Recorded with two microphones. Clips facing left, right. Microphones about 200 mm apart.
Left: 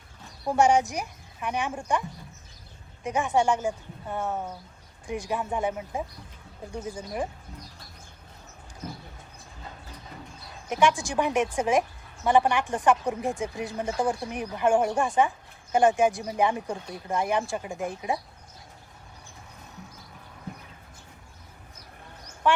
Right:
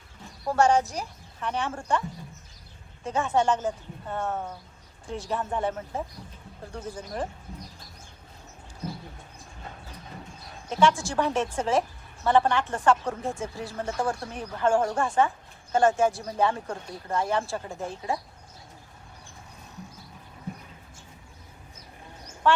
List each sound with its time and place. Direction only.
0.4 s a woman's voice: 15° left (ahead or behind)
10.7 s a woman's voice: 15° left (ahead or behind)
22.4 s speech: 15° left (ahead or behind)